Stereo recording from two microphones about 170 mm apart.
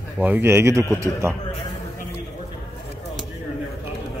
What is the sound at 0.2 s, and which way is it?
Speech, 10° right (ahead or behind).